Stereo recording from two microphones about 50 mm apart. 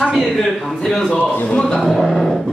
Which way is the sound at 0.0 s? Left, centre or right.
Centre.